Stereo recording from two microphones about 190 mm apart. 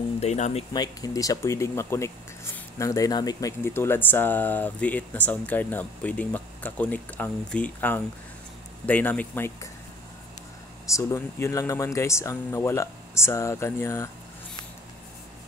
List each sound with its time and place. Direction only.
0.2 s speech: 35° left (ahead or behind)
0.7 s speech: 20° left (ahead or behind)
10.9 s speech: 15° left (ahead or behind)